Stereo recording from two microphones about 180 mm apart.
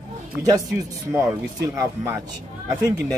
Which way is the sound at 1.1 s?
15° right (ahead or behind).